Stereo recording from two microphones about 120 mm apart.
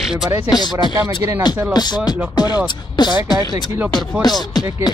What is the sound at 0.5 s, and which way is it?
Music, 35° left (ahead or behind).